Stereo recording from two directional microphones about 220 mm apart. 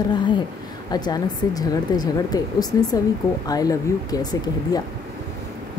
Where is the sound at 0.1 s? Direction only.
20° left (ahead or behind).